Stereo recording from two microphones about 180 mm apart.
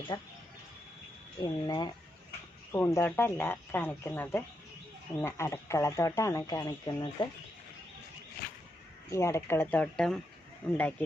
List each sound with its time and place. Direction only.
0.1 s speech: 25° left (ahead or behind)
1.4 s speech: 25° left (ahead or behind)
9.0 s speech: 15° left (ahead or behind)